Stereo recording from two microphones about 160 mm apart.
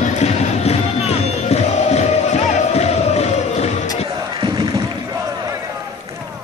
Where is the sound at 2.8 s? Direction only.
40° left (ahead or behind).